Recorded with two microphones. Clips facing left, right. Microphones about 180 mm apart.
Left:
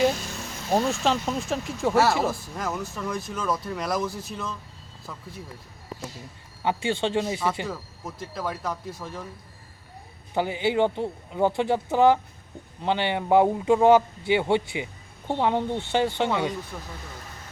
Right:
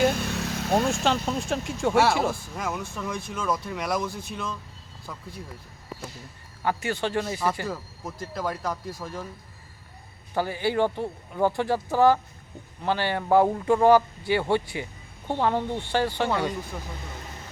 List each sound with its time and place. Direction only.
0.3 s vehicle: 65° right (ahead or behind)
0.7 s speech: centre (ahead or behind)
6.7 s speech: 25° left (ahead or behind)
7.7 s speech: centre (ahead or behind)
10.3 s speech: 20° left (ahead or behind)
16.7 s speech: 5° right (ahead or behind)